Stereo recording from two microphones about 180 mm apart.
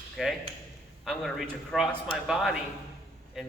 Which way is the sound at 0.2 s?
Centre (ahead or behind).